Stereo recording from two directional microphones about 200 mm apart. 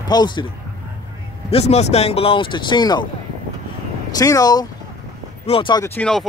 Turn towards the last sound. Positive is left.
turn(degrees=5)  # may be behind; listen again after turning